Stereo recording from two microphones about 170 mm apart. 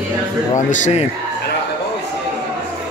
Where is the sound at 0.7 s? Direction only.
45° left (ahead or behind).